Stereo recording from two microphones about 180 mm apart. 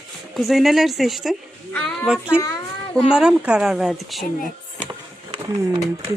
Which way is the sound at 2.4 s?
20° left (ahead or behind).